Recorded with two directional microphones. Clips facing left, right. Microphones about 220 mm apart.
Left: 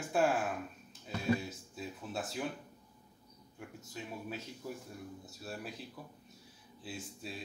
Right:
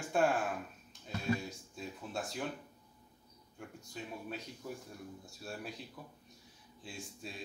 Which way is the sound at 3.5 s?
Centre (ahead or behind).